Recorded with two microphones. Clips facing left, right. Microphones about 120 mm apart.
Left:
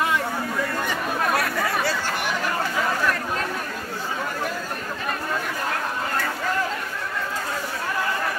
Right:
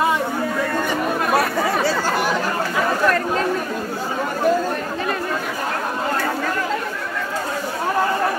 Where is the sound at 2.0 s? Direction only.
40° right (ahead or behind).